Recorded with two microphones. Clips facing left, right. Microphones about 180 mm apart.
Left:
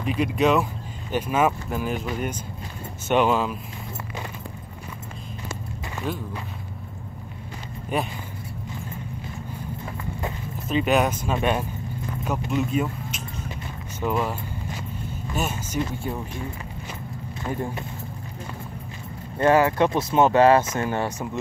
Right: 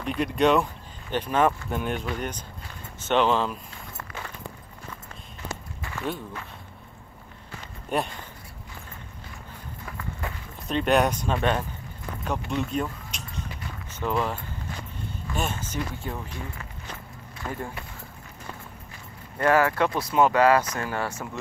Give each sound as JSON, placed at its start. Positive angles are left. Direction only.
{"t": 0.0, "sound": "speech", "side_deg": 0}
{"t": 6.1, "sound": "speech", "side_deg": 0}
{"t": 7.9, "sound": "speech", "side_deg": 0}
{"t": 9.8, "sound": "vehicle", "side_deg": 20}
{"t": 10.7, "sound": "speech", "side_deg": 5}
{"t": 13.9, "sound": "vehicle", "side_deg": 10}
{"t": 15.3, "sound": "speech", "side_deg": 5}
{"t": 17.5, "sound": "speech", "side_deg": 20}
{"t": 19.3, "sound": "speech", "side_deg": 20}